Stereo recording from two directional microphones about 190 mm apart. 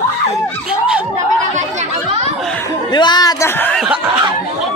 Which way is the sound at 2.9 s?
20° left (ahead or behind).